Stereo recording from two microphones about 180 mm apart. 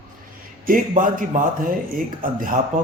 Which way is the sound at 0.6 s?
50° right (ahead or behind).